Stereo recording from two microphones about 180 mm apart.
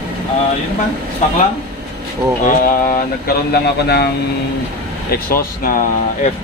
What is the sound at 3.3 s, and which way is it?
Speech, 60° left (ahead or behind).